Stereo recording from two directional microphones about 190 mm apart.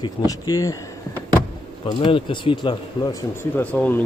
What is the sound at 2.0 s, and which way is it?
Speech, 25° left (ahead or behind).